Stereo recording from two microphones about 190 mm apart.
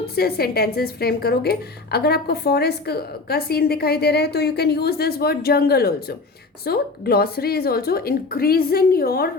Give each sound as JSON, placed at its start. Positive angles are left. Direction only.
{"t": 0.2, "sound": "a woman's voice", "side_deg": 55}